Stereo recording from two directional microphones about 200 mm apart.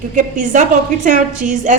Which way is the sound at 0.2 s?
40° right (ahead or behind).